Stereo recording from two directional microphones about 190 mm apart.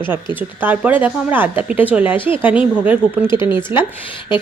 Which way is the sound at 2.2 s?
25° left (ahead or behind).